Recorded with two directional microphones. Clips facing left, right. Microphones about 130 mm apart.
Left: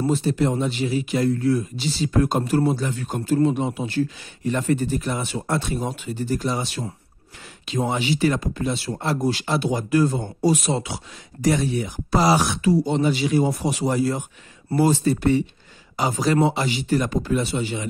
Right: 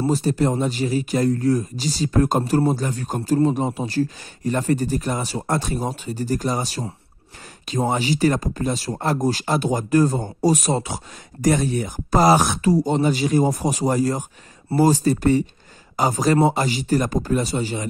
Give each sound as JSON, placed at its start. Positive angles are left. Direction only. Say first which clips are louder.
{"t": 0.0, "sound": "speech", "louder": "right 1 dB", "side_deg": -40}